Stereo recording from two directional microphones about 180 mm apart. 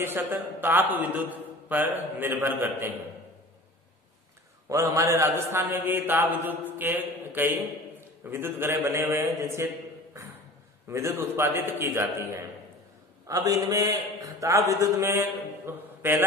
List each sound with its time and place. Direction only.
0.0 s mantra: 10° right (ahead or behind)
4.6 s mantra: 15° right (ahead or behind)
10.9 s mantra: 15° right (ahead or behind)
13.3 s a man's voice: 20° right (ahead or behind)